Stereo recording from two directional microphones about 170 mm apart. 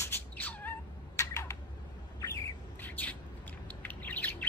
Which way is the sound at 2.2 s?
15° left (ahead or behind).